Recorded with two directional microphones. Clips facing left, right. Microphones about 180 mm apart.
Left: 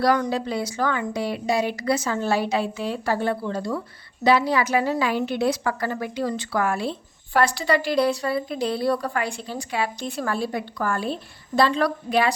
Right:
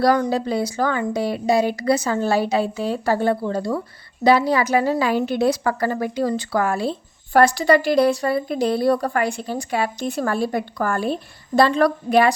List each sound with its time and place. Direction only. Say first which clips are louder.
0.0 s a woman's voice: right 3 dB; 40° right (ahead or behind)